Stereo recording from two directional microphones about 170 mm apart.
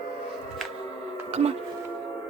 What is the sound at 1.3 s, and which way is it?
Speech, 40° right (ahead or behind).